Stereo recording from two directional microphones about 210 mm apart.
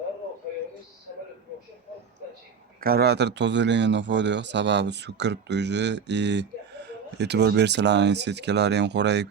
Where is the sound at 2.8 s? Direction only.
50° right (ahead or behind).